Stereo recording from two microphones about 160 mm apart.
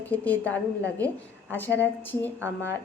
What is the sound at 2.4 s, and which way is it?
Speech, 15° right (ahead or behind).